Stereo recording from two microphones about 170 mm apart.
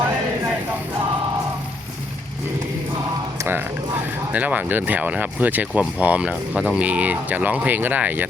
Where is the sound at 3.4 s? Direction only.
10° right (ahead or behind).